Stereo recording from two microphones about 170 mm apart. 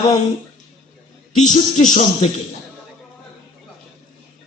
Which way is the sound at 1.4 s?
45° left (ahead or behind).